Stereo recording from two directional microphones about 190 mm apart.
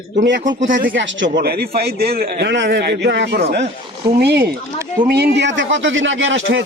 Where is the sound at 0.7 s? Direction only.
45° right (ahead or behind).